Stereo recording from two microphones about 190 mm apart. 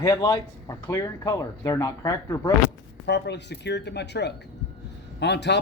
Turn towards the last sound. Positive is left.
turn(degrees=65)  # may be behind; listen again after turning